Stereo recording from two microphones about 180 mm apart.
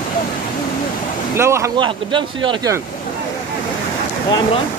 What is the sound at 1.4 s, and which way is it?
Speech, 15° right (ahead or behind).